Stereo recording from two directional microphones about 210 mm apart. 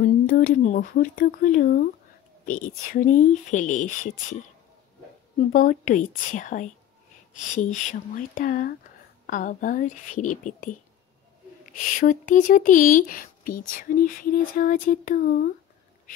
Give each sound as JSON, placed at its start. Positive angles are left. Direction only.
{"t": 0.3, "sound": "speech", "side_deg": 40}
{"t": 5.5, "sound": "speech", "side_deg": 40}